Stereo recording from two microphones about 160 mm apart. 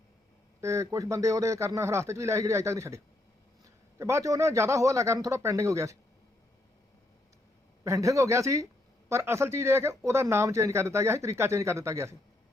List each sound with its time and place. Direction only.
0.6 s a man's voice: 20° right (ahead or behind)
7.9 s a man's voice: 20° right (ahead or behind)